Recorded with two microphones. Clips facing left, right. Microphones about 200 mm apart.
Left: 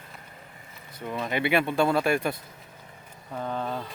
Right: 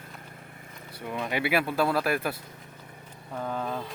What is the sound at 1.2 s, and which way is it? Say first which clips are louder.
Speech: left 2 dB; 5° right (ahead or behind).